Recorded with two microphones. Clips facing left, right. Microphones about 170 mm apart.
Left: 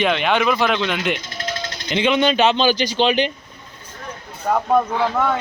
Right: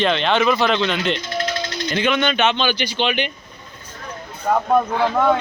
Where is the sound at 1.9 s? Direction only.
25° left (ahead or behind).